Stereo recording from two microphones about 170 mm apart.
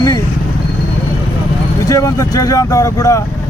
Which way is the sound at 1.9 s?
20° left (ahead or behind).